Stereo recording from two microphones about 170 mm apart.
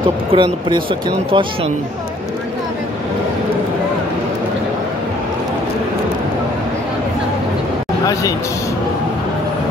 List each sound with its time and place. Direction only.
0.3 s speech: 30° right (ahead or behind)
8.1 s speech: 20° left (ahead or behind)